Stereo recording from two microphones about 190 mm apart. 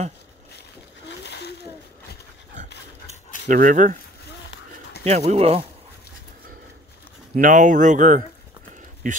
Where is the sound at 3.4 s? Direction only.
45° right (ahead or behind).